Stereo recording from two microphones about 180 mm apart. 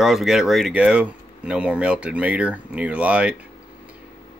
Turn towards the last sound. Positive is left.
turn(degrees=-5)  # may be behind; listen again after turning